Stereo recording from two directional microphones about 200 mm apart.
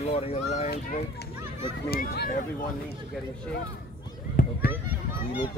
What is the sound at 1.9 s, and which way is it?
Speech, 50° left (ahead or behind).